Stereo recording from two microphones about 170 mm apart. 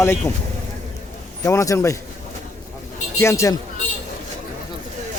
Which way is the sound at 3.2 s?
15° left (ahead or behind).